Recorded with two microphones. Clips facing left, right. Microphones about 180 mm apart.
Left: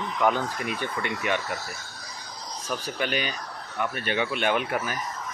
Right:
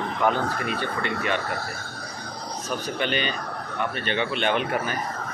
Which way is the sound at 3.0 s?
10° left (ahead or behind).